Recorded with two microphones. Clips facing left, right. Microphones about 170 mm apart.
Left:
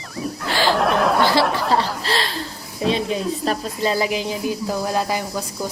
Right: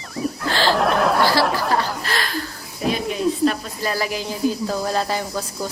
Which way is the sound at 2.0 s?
30° left (ahead or behind).